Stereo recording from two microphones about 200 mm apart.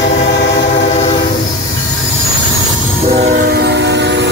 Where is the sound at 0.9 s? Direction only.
30° left (ahead or behind).